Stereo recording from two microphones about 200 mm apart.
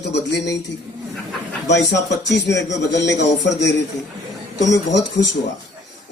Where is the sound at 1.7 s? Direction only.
60° left (ahead or behind).